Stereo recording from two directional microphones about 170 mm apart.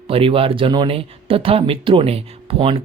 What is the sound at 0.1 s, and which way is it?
Speech, 35° right (ahead or behind).